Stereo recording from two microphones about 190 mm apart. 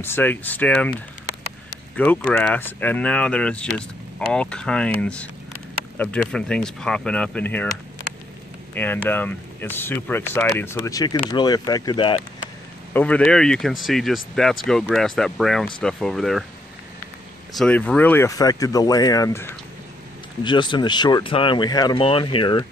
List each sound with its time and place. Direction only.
0.0 s speech: 10° left (ahead or behind)
2.0 s speech: 5° left (ahead or behind)
8.7 s speech: 10° left (ahead or behind)
12.9 s speech: 5° left (ahead or behind)
17.6 s speech: 5° left (ahead or behind); by 22.7 s 25° left (ahead or behind)